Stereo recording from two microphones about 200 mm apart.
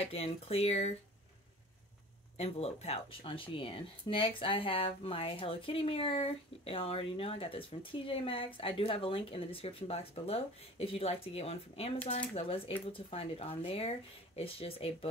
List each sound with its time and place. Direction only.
0.0 s speech: 30° left (ahead or behind)
2.3 s speech: 30° left (ahead or behind)